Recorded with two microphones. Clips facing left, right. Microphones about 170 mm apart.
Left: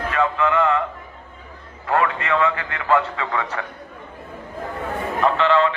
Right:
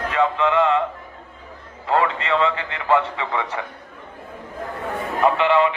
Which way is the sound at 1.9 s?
25° right (ahead or behind).